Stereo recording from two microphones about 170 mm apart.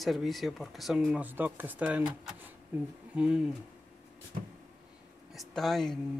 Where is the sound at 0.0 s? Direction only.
Centre (ahead or behind).